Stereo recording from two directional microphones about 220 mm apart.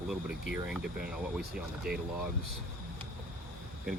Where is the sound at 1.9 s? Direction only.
40° right (ahead or behind).